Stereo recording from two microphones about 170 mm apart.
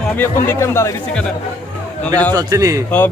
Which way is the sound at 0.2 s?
15° left (ahead or behind).